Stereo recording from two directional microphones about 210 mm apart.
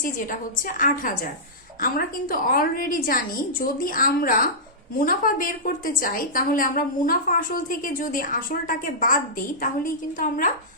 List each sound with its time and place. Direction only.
0.8 s a woman's voice: 40° left (ahead or behind)